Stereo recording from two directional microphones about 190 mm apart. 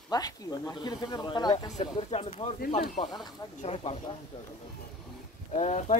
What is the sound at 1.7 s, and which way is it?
Speech, 35° left (ahead or behind).